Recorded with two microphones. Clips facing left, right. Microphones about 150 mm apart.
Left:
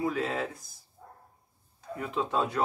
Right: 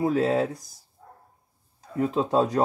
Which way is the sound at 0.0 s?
40° right (ahead or behind).